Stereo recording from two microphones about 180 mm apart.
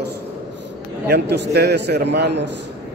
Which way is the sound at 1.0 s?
70° right (ahead or behind).